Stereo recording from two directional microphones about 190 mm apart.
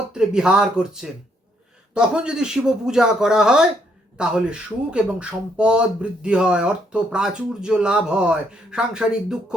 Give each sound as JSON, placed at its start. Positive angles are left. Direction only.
{"t": 0.1, "sound": "speech", "side_deg": -5}